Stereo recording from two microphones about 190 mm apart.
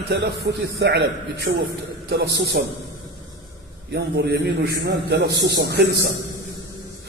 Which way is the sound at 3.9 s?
65° right (ahead or behind).